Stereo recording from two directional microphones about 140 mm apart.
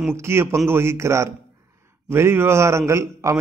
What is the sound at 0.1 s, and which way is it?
A man's voice, 20° right (ahead or behind).